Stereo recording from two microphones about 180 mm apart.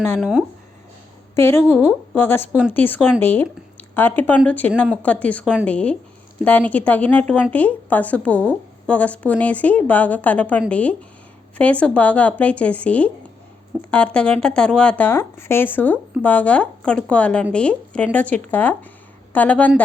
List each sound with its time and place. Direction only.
0.2 s speech: 5° right (ahead or behind)
1.4 s speech: 15° left (ahead or behind)
2.5 s speech: 5° right (ahead or behind)
2.7 s speech: 10° left (ahead or behind)